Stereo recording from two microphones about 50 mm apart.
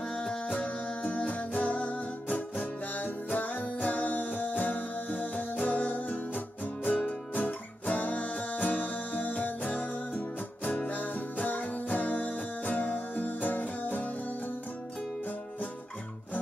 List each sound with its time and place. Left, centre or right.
0.1 s music: centre